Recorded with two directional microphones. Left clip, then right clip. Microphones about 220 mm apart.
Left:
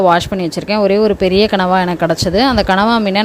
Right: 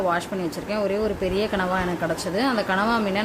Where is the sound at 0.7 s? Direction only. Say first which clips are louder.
Left 13 dB; 40° left (ahead or behind).